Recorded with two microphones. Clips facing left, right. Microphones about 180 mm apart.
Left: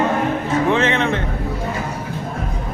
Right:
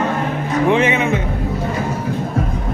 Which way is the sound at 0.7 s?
10° right (ahead or behind).